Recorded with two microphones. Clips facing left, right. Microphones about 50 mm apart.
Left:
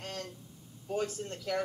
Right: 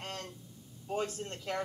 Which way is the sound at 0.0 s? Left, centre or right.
Right.